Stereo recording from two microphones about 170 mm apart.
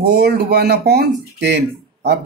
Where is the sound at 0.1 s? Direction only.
75° right (ahead or behind).